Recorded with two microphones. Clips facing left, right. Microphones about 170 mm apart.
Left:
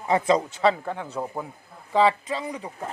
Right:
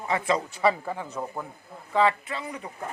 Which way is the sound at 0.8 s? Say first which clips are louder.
Left 1 dB; 5° right (ahead or behind).